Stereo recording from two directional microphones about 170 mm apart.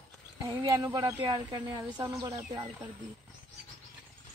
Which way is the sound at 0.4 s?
20° right (ahead or behind).